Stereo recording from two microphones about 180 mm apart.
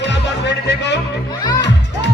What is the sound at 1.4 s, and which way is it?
Music, 20° left (ahead or behind).